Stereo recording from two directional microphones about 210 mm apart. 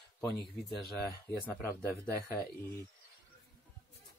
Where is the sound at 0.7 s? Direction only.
50° left (ahead or behind).